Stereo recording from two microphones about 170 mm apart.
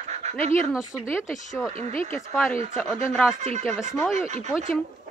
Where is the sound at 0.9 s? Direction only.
10° left (ahead or behind).